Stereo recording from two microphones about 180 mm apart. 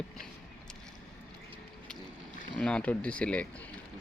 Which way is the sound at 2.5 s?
5° left (ahead or behind).